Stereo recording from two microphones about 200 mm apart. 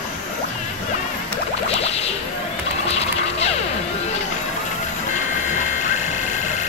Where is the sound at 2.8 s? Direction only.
30° left (ahead or behind).